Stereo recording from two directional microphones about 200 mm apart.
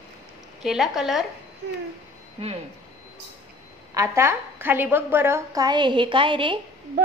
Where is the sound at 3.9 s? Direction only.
15° right (ahead or behind).